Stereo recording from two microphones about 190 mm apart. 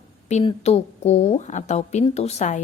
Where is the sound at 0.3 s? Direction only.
35° left (ahead or behind).